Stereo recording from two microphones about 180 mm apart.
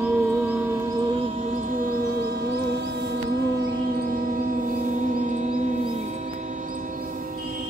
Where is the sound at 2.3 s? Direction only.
65° right (ahead or behind); by 5.4 s 45° right (ahead or behind).